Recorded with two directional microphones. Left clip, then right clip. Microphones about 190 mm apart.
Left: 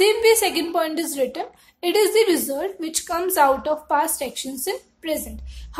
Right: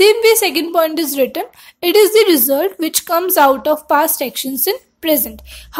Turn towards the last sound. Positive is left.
turn(degrees=-35)  # may be behind; listen again after turning